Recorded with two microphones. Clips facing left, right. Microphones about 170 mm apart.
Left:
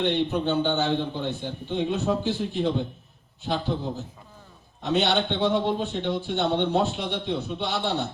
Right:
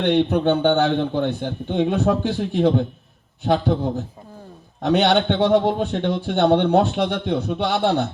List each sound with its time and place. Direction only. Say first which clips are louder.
0.0 s a man's voice: right 6 dB; 70° right (ahead or behind)
4.8 s a man's voice: right 6 dB; 65° right (ahead or behind)